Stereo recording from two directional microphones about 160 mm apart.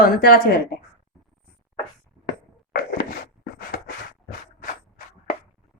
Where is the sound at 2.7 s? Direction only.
70° left (ahead or behind).